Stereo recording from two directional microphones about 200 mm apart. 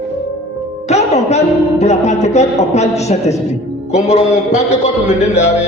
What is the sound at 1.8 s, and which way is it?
A man's voice, 35° left (ahead or behind).